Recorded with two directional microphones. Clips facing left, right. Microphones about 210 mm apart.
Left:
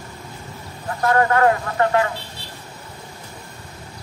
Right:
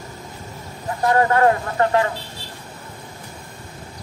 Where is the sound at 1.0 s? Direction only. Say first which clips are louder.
Even; 25° right (ahead or behind).